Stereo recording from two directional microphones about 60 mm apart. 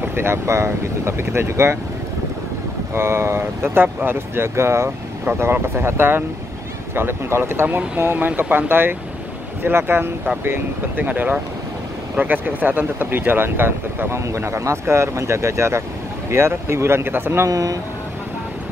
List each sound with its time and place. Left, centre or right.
0.1 s speech: right
2.9 s speech: right
7.6 s speech: right
11.1 s speech: right
14.2 s speech: right
17.5 s speech: right